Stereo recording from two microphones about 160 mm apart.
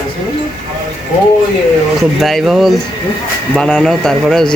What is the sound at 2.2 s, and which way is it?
Speech, centre (ahead or behind).